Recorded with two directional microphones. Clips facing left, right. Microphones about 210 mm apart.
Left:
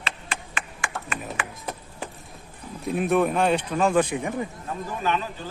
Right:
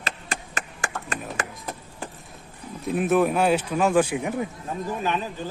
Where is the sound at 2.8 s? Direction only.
Centre (ahead or behind).